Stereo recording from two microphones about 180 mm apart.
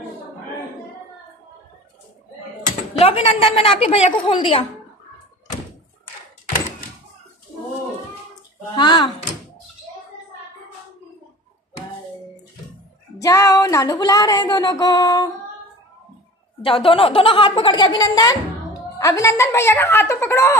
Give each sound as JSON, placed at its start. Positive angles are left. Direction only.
{"t": 2.9, "sound": "a woman's voice", "side_deg": 30}
{"t": 8.7, "sound": "a sound", "side_deg": 25}
{"t": 13.2, "sound": "music", "side_deg": 20}
{"t": 16.6, "sound": "a woman's voice", "side_deg": 30}